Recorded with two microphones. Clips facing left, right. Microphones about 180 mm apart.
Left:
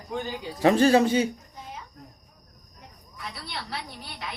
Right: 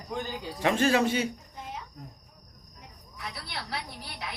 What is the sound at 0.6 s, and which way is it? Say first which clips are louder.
Speech: left 6 dB; 35° left (ahead or behind).